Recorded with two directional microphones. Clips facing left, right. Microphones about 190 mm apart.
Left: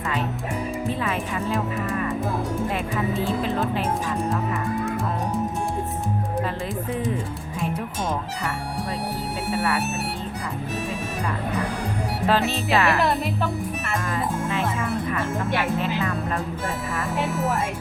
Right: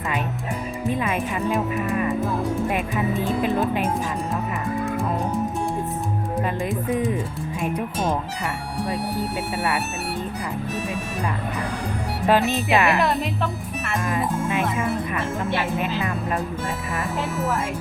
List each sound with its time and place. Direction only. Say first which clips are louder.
0.9 s speech: right 6 dB; 15° right (ahead or behind)
3.4 s speech: right 3 dB; 15° right (ahead or behind)
12.3 s speech: right 3 dB; 15° right (ahead or behind)
13.0 s a woman's voice: even; centre (ahead or behind)
14.1 s speech: right 3 dB; 15° right (ahead or behind)
17.2 s a woman's voice: left 1 dB; centre (ahead or behind)